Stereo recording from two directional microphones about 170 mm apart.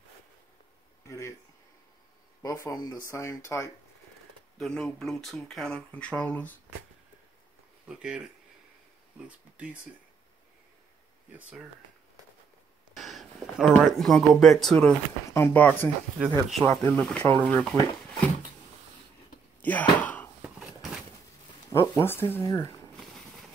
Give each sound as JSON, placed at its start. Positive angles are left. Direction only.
{"t": 1.0, "sound": "speech", "side_deg": 15}
{"t": 2.4, "sound": "speech", "side_deg": 20}
{"t": 4.6, "sound": "speech", "side_deg": 5}
{"t": 8.0, "sound": "speech", "side_deg": -5}
{"t": 12.9, "sound": "a sound", "side_deg": 0}
{"t": 13.8, "sound": "speech", "side_deg": 0}
{"t": 16.2, "sound": "speech", "side_deg": -5}
{"t": 19.6, "sound": "wail", "side_deg": 10}
{"t": 20.4, "sound": "a sound", "side_deg": 0}
{"t": 21.6, "sound": "speech", "side_deg": 15}